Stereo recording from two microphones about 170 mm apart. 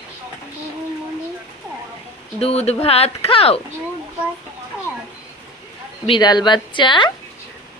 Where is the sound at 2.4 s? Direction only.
40° left (ahead or behind).